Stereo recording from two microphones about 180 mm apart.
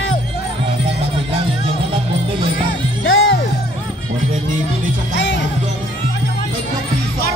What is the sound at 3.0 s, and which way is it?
Music, 90° left.